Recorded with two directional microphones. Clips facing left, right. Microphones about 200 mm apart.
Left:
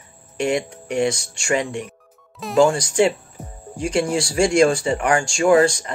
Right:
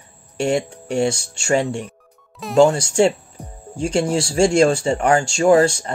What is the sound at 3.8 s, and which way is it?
Speech, 25° right (ahead or behind).